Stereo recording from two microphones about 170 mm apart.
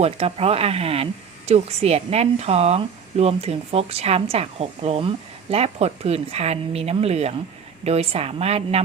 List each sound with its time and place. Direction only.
0.0 s speech: 35° right (ahead or behind)